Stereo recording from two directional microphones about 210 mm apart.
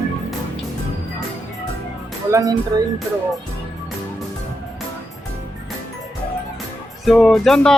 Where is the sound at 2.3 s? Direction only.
15° right (ahead or behind).